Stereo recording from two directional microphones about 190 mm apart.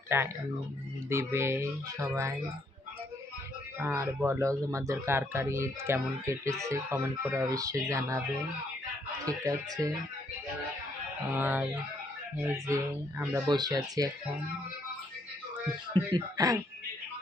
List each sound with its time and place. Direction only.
0.1 s speech: 15° right (ahead or behind)
3.8 s speech: 15° right (ahead or behind)
9.2 s speech: 15° right (ahead or behind)
11.3 s speech: 10° right (ahead or behind)
16.0 s speech: 20° right (ahead or behind)